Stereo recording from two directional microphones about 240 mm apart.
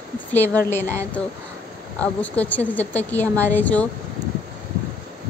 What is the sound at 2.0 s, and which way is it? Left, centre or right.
A woman's voice, centre.